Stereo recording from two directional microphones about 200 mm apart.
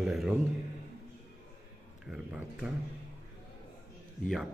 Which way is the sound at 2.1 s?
5° right (ahead or behind).